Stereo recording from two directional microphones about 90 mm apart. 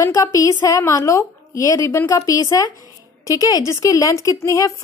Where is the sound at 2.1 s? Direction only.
40° left (ahead or behind).